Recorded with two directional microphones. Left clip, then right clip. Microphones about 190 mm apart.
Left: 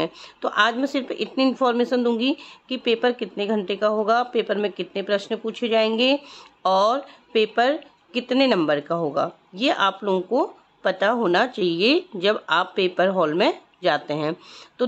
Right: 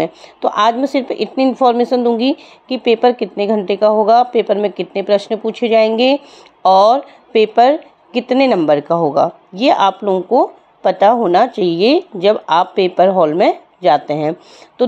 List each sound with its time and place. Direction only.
0.0 s a woman's voice: 15° right (ahead or behind)
10.0 s speech: 5° right (ahead or behind)
10.8 s a woman's voice: 15° right (ahead or behind)